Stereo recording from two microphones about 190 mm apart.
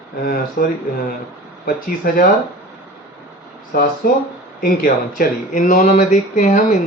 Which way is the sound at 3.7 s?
50° left (ahead or behind).